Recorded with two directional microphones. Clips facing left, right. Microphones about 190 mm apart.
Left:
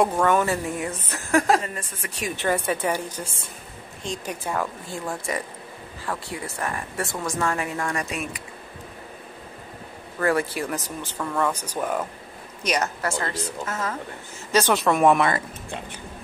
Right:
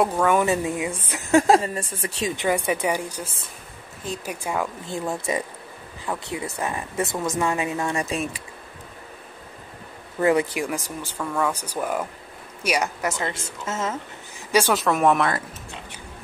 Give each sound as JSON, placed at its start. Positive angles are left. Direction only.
{"t": 0.0, "sound": "speech", "side_deg": -5}
{"t": 1.3, "sound": "a woman's voice", "side_deg": -25}
{"t": 2.3, "sound": "speech", "side_deg": -15}
{"t": 4.8, "sound": "a woman's voice", "side_deg": -20}
{"t": 10.2, "sound": "a woman's voice", "side_deg": -20}
{"t": 14.5, "sound": "speech", "side_deg": -5}